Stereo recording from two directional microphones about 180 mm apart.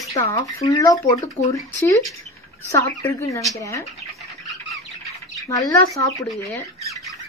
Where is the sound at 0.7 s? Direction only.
20° left (ahead or behind).